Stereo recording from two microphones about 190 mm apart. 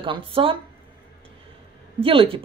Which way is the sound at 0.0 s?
25° right (ahead or behind).